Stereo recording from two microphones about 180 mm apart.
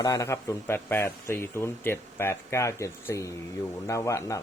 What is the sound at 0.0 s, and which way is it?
Speech, 20° left (ahead or behind).